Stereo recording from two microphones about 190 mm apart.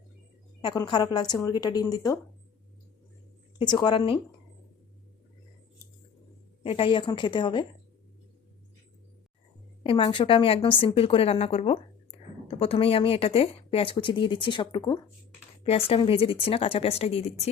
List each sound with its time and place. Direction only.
0.6 s a woman's voice: 20° left (ahead or behind)
3.6 s a woman's voice: 20° left (ahead or behind)
6.6 s a woman's voice: 30° left (ahead or behind)
9.8 s a woman's voice: 25° left (ahead or behind)